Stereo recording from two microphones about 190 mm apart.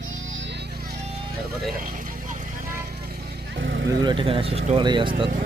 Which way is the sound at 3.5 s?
80° right.